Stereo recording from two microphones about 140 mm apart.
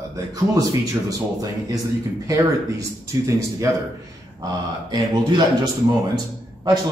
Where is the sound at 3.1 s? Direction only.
20° right (ahead or behind).